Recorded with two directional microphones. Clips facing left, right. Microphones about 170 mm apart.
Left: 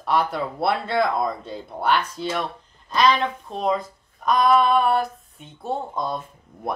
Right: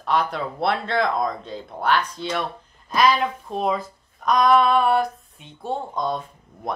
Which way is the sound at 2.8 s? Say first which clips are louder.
Even; 10° right (ahead or behind).